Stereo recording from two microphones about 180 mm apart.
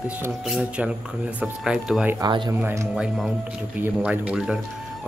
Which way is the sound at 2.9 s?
Centre (ahead or behind).